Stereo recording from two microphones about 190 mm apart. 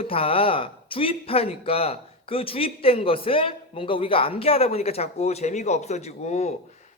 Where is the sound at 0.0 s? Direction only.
30° left (ahead or behind).